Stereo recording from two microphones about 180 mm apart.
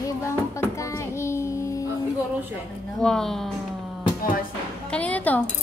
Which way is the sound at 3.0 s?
5° left (ahead or behind).